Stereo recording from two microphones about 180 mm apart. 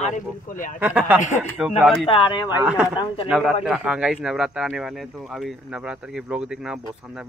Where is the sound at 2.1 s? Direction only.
25° left (ahead or behind).